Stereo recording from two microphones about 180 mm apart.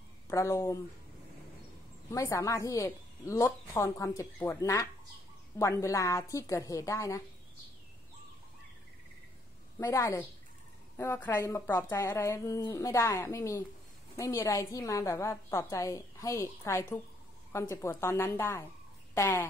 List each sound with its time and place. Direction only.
0.3 s a woman's voice: 15° left (ahead or behind)
2.0 s a woman's voice: 15° left (ahead or behind)
9.8 s a woman's voice: 15° left (ahead or behind)